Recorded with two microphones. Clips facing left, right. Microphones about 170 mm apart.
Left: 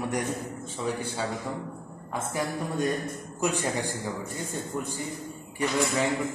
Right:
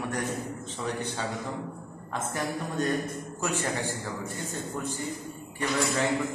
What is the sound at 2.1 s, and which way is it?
A man's voice, 10° left (ahead or behind).